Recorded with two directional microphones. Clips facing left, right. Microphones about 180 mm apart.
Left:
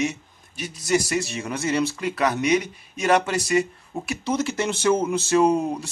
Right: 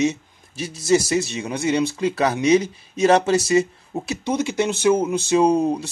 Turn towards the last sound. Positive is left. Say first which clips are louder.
# right 2 dB
turn(degrees=-20)  # may be behind; listen again after turning